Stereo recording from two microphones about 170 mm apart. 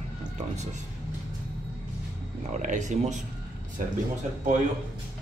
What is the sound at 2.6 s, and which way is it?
Speech, 45° right (ahead or behind).